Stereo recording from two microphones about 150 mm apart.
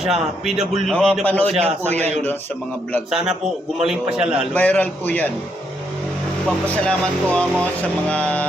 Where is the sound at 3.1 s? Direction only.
5° right (ahead or behind).